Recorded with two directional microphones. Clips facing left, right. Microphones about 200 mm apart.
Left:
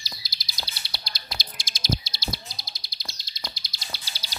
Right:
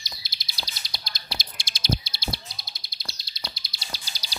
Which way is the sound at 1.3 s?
65° right (ahead or behind).